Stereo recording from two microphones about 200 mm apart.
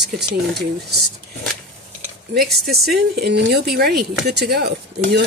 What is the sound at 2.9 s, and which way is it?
Speech, 50° right (ahead or behind).